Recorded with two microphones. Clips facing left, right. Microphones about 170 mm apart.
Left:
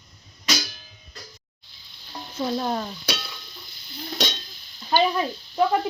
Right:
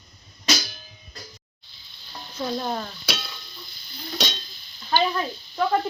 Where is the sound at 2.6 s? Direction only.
5° left (ahead or behind).